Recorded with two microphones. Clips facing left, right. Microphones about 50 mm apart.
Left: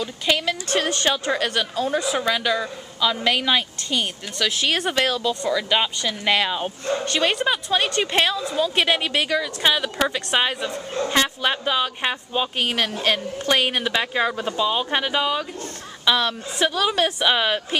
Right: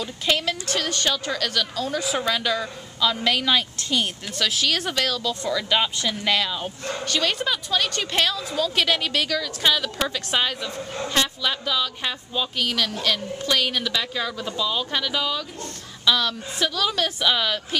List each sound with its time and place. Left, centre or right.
0.0 s a woman's voice: centre
0.7 s a woman's voice: left
2.0 s a woman's voice: centre
4.6 s a woman's voice: left
5.4 s a woman's voice: centre
6.2 s a woman's voice: left